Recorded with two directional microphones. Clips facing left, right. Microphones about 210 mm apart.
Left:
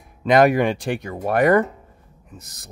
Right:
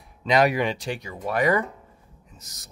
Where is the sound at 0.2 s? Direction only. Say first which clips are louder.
Left 5 dB; 50° left (ahead or behind).